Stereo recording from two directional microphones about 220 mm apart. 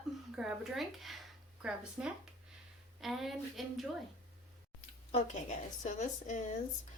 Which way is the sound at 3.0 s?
Centre (ahead or behind).